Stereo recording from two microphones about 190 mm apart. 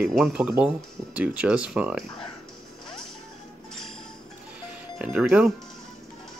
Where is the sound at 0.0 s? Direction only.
Centre (ahead or behind).